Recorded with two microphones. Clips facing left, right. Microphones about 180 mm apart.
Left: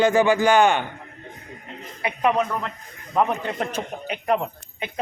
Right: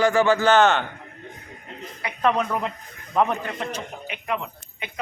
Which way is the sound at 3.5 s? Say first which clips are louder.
Left 3 dB; 40° left (ahead or behind).